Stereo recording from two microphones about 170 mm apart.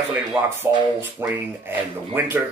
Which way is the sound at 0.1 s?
10° right (ahead or behind).